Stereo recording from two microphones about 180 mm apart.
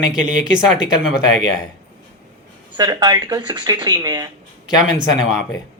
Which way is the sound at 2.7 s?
20° right (ahead or behind).